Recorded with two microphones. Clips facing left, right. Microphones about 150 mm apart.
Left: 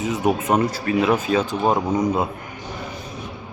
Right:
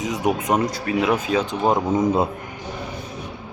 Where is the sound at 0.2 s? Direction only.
15° right (ahead or behind).